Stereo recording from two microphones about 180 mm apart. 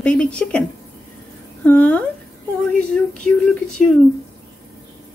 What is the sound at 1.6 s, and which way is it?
Speech, 10° left (ahead or behind).